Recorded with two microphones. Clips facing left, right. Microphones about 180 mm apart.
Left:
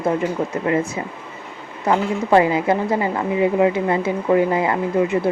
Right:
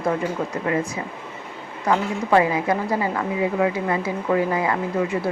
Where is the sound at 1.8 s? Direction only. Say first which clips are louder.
Left 3 dB; 25° left (ahead or behind).